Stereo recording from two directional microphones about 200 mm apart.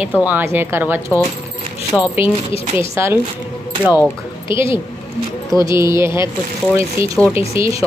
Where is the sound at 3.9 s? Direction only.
20° left (ahead or behind).